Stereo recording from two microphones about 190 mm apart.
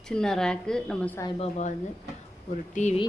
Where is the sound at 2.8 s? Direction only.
40° left (ahead or behind).